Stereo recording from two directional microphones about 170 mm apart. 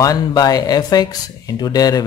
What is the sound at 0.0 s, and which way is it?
Speech, 20° left (ahead or behind).